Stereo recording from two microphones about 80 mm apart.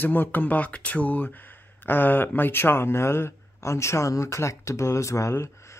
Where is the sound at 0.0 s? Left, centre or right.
Left.